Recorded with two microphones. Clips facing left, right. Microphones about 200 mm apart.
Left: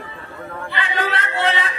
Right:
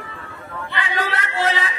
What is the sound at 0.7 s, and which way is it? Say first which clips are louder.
Music: left 1 dB; 25° left (ahead or behind).